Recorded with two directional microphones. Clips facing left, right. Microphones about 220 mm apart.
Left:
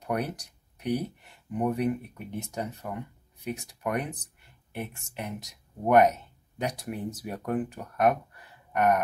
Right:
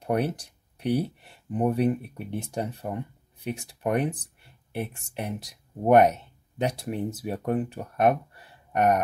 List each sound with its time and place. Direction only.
0.0 s speech: 30° right (ahead or behind)